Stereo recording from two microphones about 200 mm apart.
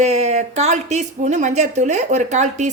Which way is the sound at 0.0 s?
35° right (ahead or behind).